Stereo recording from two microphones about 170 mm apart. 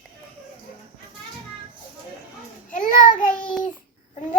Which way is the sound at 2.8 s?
55° left (ahead or behind).